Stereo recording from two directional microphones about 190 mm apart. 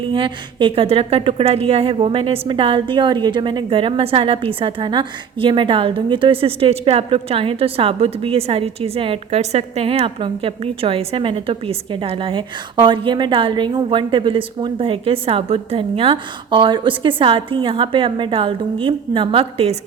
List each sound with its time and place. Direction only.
0.1 s a woman's voice: 25° right (ahead or behind)